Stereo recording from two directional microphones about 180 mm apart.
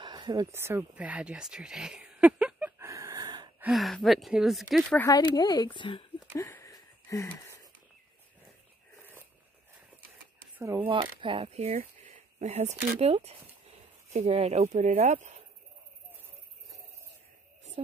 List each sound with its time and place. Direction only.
0.0 s a sound: 25° right (ahead or behind)
3.6 s speech: centre (ahead or behind)
5.0 s speech: 20° left (ahead or behind)
6.3 s a sound: 15° left (ahead or behind)
10.6 s speech: 15° right (ahead or behind)
10.9 s speech: 30° right (ahead or behind)